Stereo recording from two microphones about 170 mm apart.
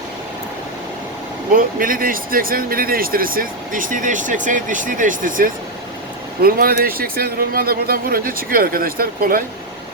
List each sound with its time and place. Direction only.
1.5 s speech: 55° right (ahead or behind)
6.4 s speech: 60° right (ahead or behind)